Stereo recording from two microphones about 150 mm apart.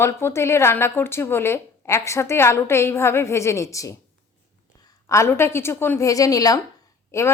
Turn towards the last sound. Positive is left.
turn(degrees=20)  # may be behind; listen again after turning